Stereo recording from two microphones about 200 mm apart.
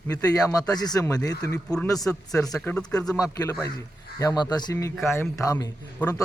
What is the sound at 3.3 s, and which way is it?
A man's voice, 15° left (ahead or behind).